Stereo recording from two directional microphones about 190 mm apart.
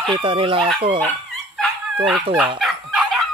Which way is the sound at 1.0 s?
5° left (ahead or behind).